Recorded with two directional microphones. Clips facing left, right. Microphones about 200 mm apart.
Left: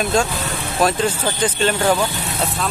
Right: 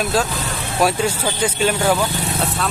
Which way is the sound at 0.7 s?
10° right (ahead or behind).